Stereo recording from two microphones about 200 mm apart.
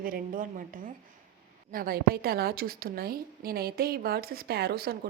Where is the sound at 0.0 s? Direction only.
45° right (ahead or behind).